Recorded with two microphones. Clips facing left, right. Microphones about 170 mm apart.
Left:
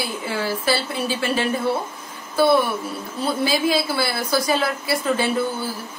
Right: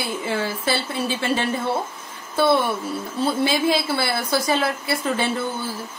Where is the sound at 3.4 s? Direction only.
25° right (ahead or behind).